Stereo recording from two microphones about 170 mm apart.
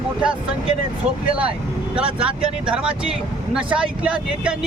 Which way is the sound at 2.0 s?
30° right (ahead or behind).